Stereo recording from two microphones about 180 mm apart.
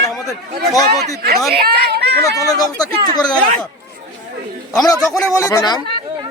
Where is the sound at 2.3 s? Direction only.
20° left (ahead or behind).